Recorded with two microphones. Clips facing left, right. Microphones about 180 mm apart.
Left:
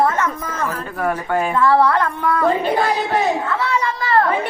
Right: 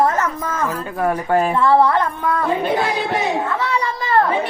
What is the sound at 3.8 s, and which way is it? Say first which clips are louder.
Children playing: right 1 dB; 15° right (ahead or behind).